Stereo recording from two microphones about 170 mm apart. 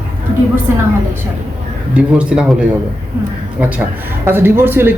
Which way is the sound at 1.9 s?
5° right (ahead or behind).